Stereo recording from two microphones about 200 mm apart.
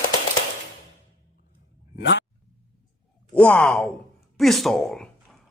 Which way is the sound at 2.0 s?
60° left (ahead or behind).